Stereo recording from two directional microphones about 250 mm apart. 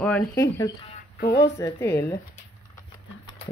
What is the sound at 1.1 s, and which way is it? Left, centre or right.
Speech, left.